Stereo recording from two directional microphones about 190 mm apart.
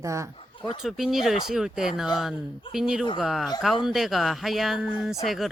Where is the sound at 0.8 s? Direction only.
Centre (ahead or behind).